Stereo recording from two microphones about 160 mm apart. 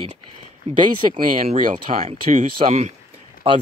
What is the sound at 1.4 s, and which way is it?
Speech, 55° right (ahead or behind).